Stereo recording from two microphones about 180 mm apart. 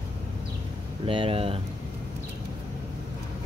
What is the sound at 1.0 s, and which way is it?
Speech, 30° right (ahead or behind).